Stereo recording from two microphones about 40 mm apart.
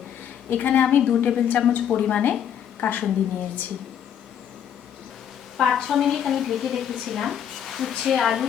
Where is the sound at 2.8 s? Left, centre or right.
Left.